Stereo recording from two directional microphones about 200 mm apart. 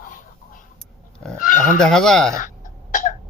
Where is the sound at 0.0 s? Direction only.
40° left (ahead or behind).